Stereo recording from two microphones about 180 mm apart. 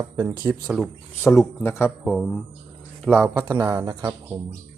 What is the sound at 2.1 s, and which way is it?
Speech, centre (ahead or behind).